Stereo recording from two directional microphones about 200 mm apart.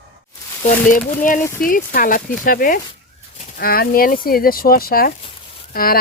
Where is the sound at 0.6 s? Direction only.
40° left (ahead or behind).